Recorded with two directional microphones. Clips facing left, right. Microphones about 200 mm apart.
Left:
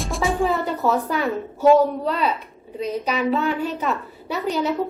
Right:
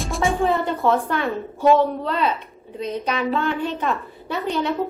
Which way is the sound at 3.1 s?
5° left (ahead or behind).